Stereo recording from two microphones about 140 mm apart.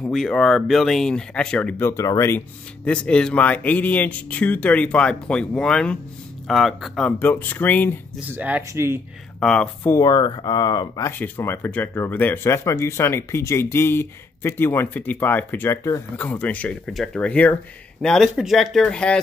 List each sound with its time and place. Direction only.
0.0 s speech: 5° left (ahead or behind); by 2.4 s 20° left (ahead or behind)
2.8 s speech: 5° left (ahead or behind)
8.3 s speech: 10° right (ahead or behind)
9.4 s speech: 5° left (ahead or behind)
9.8 s speech: 25° left (ahead or behind)
11.1 s speech: 15° left (ahead or behind)